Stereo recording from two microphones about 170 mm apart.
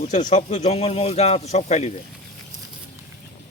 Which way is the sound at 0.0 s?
45° left (ahead or behind).